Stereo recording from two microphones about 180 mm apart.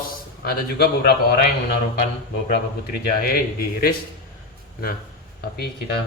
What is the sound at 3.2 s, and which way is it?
Speech, 55° left (ahead or behind).